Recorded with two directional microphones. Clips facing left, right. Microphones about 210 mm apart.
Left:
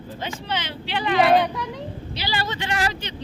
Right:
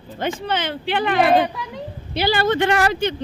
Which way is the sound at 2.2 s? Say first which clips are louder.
Right 11 dB; 55° right (ahead or behind).